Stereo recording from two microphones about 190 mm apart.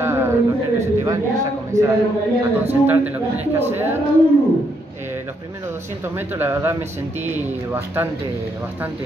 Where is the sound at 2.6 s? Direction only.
10° right (ahead or behind).